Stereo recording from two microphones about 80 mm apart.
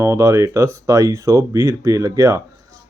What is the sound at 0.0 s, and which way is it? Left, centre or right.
Speech, right.